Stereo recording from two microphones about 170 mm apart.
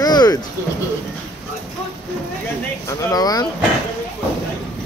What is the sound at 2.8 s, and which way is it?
Speech, 20° left (ahead or behind).